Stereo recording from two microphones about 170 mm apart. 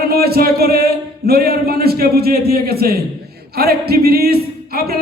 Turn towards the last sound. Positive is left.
turn(degrees=-65)  # may be behind; listen again after turning